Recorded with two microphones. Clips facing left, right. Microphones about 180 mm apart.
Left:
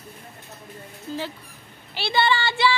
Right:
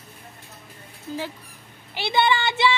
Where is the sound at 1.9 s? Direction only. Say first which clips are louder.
Right 1 dB; 15° right (ahead or behind).